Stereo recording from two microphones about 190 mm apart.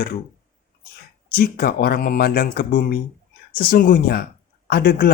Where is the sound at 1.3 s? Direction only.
55° left (ahead or behind).